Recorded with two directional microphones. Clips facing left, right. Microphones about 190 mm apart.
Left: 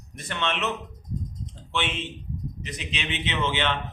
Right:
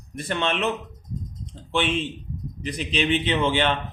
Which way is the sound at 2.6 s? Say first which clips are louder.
Right 13 dB; 35° right (ahead or behind).